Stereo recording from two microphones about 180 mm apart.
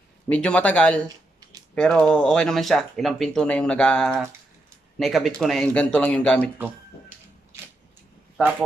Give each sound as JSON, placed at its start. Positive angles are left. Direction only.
{"t": 0.3, "sound": "speech", "side_deg": 5}
{"t": 1.0, "sound": "a sound", "side_deg": -20}
{"t": 1.8, "sound": "speech", "side_deg": 5}